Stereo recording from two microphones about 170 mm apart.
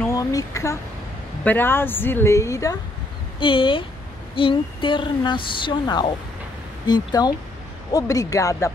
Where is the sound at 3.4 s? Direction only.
30° left (ahead or behind).